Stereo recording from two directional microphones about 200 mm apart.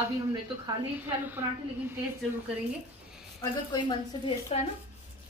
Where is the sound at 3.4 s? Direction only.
20° left (ahead or behind).